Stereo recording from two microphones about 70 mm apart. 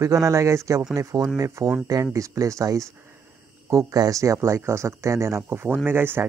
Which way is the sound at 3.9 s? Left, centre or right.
Right.